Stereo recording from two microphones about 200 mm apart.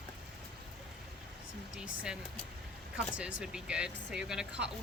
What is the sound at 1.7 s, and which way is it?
Speech, 5° right (ahead or behind).